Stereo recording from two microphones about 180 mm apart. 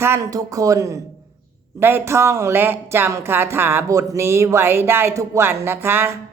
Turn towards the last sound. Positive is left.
turn(degrees=-15)  # may be behind; listen again after turning